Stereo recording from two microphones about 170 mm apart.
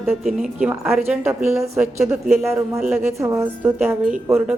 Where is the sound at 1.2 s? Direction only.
15° right (ahead or behind).